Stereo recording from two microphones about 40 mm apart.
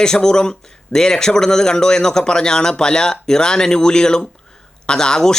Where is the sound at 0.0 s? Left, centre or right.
Centre.